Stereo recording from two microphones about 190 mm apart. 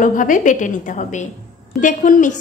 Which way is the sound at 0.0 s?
45° left (ahead or behind).